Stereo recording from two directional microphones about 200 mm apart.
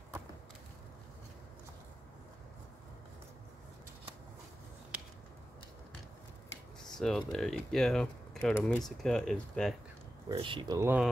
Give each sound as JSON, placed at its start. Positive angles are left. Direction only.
{"t": 6.8, "sound": "speech", "side_deg": 5}
{"t": 10.2, "sound": "speech", "side_deg": -25}